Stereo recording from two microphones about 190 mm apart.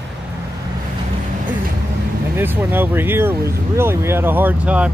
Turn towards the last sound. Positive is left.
turn(degrees=-5)  # may be behind; listen again after turning